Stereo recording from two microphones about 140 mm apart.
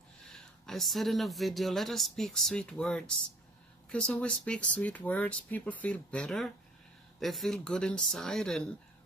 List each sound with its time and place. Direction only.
0.7 s speech: centre (ahead or behind)